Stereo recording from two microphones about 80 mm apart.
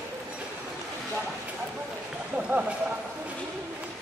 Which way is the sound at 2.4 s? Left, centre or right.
Centre.